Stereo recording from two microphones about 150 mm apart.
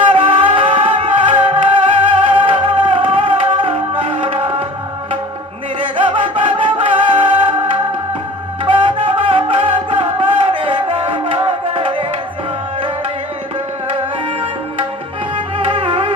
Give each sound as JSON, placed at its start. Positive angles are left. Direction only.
{"t": 0.1, "sound": "music", "side_deg": -35}
{"t": 6.0, "sound": "music", "side_deg": -35}
{"t": 15.5, "sound": "music", "side_deg": -35}